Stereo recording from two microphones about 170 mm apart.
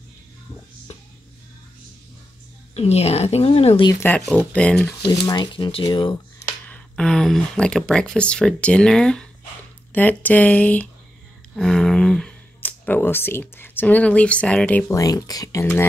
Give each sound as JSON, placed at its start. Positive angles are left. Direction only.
{"t": 2.7, "sound": "a woman's voice", "side_deg": 35}
{"t": 4.3, "sound": "speech", "side_deg": 5}
{"t": 5.0, "sound": "speech", "side_deg": 20}
{"t": 6.7, "sound": "speech", "side_deg": 5}
{"t": 14.9, "sound": "speech", "side_deg": 20}